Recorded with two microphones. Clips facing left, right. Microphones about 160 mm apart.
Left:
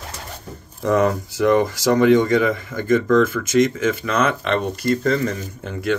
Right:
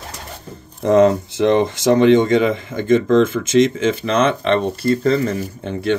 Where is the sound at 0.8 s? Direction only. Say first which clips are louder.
Right 5 dB; 25° right (ahead or behind).